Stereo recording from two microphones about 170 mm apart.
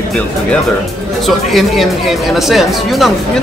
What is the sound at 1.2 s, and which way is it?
Speech, centre (ahead or behind).